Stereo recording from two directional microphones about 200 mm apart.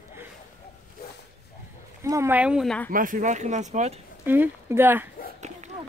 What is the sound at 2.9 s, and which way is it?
Speech, 40° right (ahead or behind).